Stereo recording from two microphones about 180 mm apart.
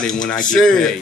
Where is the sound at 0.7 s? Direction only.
5° left (ahead or behind).